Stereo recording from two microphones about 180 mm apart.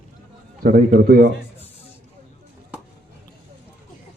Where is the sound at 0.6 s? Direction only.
55° right (ahead or behind).